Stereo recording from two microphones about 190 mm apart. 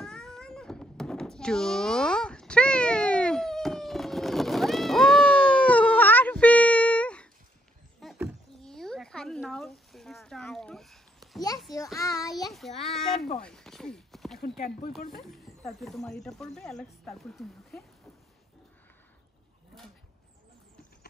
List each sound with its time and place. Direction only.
0.0 s meow: 5° left (ahead or behind)
8.0 s a sound: centre (ahead or behind)
11.7 s child singing: 15° left (ahead or behind)
12.5 s child singing: centre (ahead or behind)
13.4 s a sound: 5° left (ahead or behind)
15.0 s speech: centre (ahead or behind)